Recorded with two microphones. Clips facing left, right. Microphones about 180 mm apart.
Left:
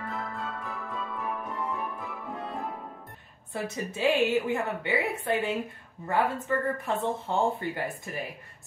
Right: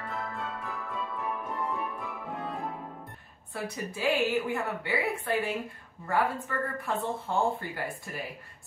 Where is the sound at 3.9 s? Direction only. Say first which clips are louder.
Left 3 dB; 20° left (ahead or behind).